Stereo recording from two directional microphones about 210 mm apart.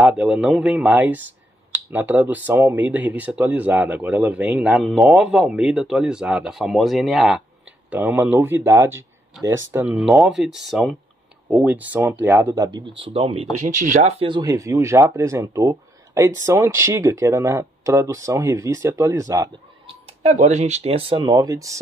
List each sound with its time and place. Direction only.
0.0 s speech: 5° right (ahead or behind); by 13.5 s 25° right (ahead or behind)
13.7 s speech: 40° right (ahead or behind)
14.2 s speech: 20° right (ahead or behind)
20.2 s speech: 35° right (ahead or behind); by 21.7 s 15° right (ahead or behind)